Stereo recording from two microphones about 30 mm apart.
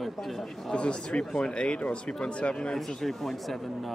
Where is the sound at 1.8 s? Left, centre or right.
Left.